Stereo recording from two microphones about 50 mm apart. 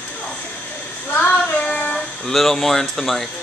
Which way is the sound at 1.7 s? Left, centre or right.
Left.